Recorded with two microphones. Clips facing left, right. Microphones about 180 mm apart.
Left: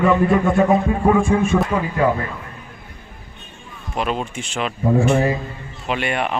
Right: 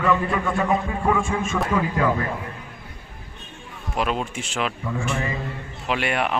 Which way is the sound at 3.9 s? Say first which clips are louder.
Left 2 dB; centre (ahead or behind).